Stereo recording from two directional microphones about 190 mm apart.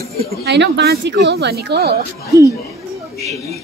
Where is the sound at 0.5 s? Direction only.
60° right (ahead or behind).